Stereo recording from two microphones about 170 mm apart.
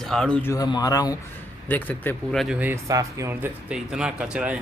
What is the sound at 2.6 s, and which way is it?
Speech, 15° right (ahead or behind).